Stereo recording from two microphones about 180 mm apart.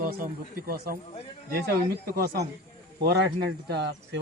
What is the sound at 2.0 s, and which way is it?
A man's voice, 60° right (ahead or behind).